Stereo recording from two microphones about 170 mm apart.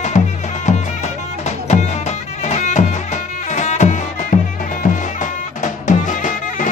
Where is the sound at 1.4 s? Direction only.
45° left (ahead or behind).